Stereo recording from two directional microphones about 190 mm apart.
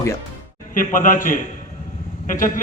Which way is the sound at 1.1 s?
45° left (ahead or behind).